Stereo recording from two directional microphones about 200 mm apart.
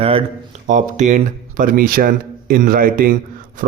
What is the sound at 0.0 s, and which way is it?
Speech, 30° right (ahead or behind).